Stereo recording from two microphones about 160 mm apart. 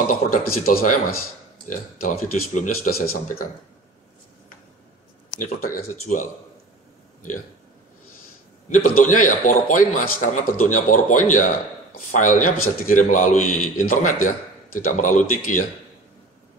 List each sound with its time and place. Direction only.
0.3 s speech: 70° left (ahead or behind)
2.0 s a man's voice: 55° left (ahead or behind)
5.3 s a man's voice: 55° left (ahead or behind)
8.6 s a man's voice: 55° left (ahead or behind)